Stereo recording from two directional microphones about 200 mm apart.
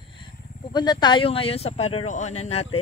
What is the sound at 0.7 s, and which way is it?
Speech, 20° left (ahead or behind).